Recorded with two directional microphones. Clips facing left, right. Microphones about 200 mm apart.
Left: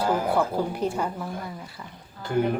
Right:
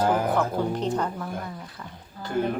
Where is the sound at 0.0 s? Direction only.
10° left (ahead or behind).